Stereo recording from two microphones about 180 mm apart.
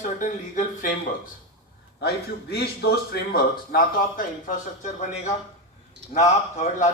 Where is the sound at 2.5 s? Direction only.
65° left (ahead or behind); by 4.9 s 45° left (ahead or behind).